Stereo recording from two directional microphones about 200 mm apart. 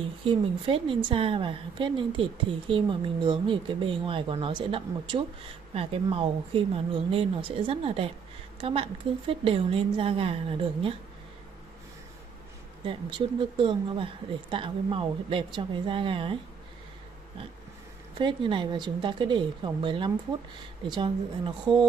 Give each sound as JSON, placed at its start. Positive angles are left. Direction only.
{"t": 0.0, "sound": "a woman's voice", "side_deg": -25}
{"t": 13.4, "sound": "a woman's voice", "side_deg": -25}
{"t": 18.1, "sound": "a woman's voice", "side_deg": -25}